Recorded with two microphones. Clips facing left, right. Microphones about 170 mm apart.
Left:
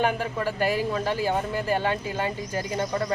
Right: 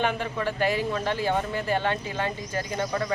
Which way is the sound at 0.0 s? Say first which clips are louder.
Left 2 dB; 10° left (ahead or behind).